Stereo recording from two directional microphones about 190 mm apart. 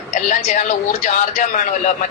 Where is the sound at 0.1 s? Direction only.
40° left (ahead or behind).